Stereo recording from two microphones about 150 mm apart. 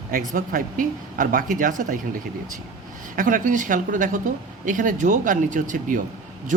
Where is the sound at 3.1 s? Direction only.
65° right (ahead or behind).